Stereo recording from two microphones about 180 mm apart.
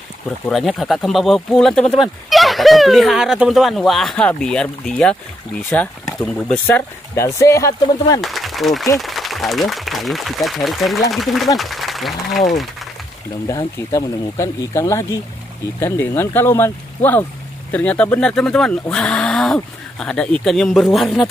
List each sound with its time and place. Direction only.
0.5 s speech: centre (ahead or behind)
6.2 s speech: 5° left (ahead or behind)
8.2 s speech: centre (ahead or behind)
13.5 s speech: 20° left (ahead or behind); by 21.3 s centre (ahead or behind)